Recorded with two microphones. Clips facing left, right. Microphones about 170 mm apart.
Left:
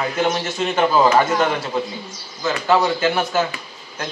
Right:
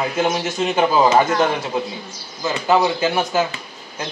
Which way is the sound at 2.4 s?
15° right (ahead or behind).